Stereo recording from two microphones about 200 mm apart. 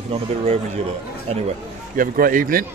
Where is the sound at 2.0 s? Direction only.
45° right (ahead or behind).